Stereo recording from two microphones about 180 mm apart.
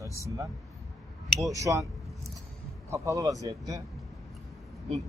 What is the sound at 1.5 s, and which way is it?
Speech, 20° right (ahead or behind).